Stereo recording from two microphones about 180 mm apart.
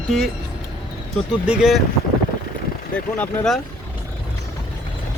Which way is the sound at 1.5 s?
Centre (ahead or behind).